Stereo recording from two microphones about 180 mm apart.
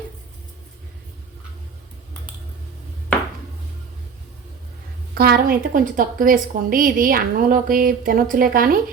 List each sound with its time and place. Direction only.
5.1 s a woman's voice: 60° right (ahead or behind)